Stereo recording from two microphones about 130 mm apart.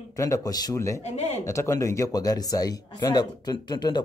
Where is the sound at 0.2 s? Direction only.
30° left (ahead or behind).